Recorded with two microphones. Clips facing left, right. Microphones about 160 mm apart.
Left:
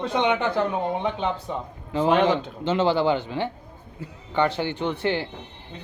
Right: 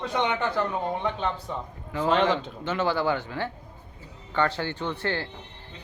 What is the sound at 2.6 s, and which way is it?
Speech, 25° left (ahead or behind).